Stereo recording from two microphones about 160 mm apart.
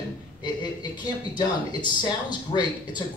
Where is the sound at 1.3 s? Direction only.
30° left (ahead or behind).